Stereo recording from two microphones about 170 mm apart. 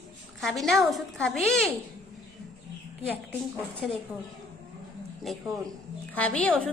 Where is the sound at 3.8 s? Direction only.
Centre (ahead or behind).